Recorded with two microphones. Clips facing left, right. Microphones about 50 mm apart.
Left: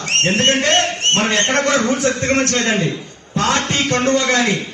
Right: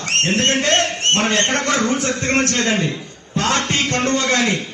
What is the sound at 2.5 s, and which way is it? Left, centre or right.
A man's voice, left.